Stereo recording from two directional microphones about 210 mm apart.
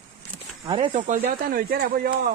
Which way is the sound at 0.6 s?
25° right (ahead or behind).